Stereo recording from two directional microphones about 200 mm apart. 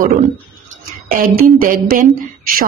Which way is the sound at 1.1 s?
40° right (ahead or behind).